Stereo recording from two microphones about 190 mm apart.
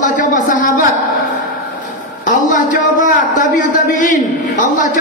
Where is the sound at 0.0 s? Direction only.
40° left (ahead or behind).